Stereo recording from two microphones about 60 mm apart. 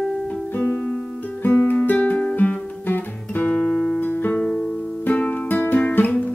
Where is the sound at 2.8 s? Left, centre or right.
Left.